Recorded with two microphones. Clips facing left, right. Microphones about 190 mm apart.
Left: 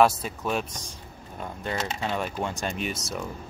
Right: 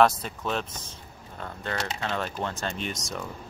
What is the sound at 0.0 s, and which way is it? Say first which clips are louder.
Speech: left 1 dB; 10° left (ahead or behind).